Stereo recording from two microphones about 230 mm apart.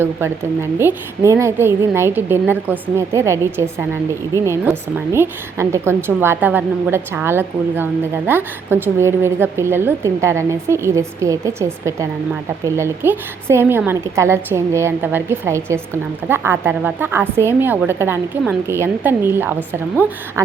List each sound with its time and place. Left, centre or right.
0.0 s a woman's voice: centre